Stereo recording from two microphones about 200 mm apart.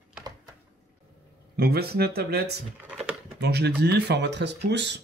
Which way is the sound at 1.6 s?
50° right (ahead or behind).